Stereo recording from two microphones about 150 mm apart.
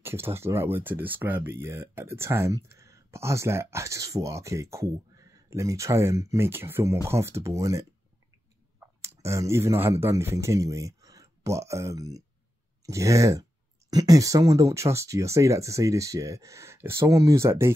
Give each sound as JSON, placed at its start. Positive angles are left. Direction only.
{"t": 0.0, "sound": "speech", "side_deg": -15}
{"t": 9.0, "sound": "speech", "side_deg": -20}